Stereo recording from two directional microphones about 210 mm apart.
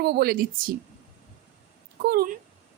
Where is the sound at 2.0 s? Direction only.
50° right (ahead or behind).